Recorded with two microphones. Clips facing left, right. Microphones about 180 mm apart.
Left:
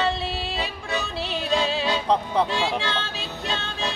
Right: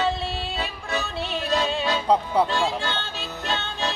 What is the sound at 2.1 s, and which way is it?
Music, 10° right (ahead or behind).